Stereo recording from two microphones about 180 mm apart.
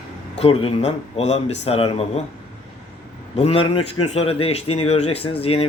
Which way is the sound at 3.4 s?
35° left (ahead or behind).